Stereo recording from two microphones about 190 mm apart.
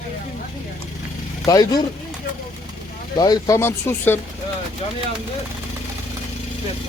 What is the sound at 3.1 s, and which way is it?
Speech, 20° left (ahead or behind).